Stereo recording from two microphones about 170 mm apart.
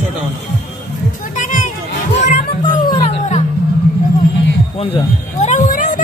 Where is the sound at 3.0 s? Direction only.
40° left (ahead or behind).